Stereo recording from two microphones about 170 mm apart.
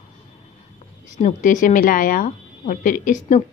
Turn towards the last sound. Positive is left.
turn(degrees=50)  # may be behind; listen again after turning